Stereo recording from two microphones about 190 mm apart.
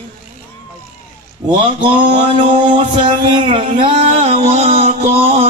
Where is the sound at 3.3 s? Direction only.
25° right (ahead or behind).